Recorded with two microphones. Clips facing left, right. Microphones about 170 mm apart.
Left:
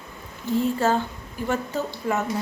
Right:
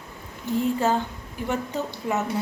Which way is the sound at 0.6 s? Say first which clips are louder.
Left 1 dB; 15° right (ahead or behind).